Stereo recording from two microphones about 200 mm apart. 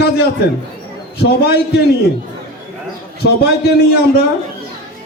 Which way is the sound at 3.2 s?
60° left (ahead or behind).